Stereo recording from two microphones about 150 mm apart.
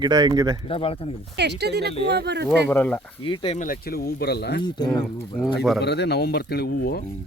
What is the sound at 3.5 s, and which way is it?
Speech, 65° left (ahead or behind).